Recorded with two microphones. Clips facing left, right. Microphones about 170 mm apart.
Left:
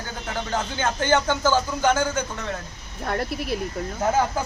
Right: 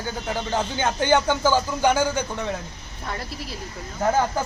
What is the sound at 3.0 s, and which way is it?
Speech, 55° left (ahead or behind).